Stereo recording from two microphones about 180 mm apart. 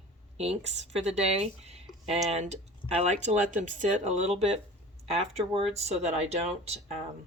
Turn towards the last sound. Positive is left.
turn(degrees=-35)  # may be behind; listen again after turning